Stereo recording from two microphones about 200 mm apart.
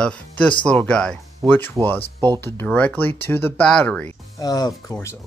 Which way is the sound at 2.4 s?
10° left (ahead or behind).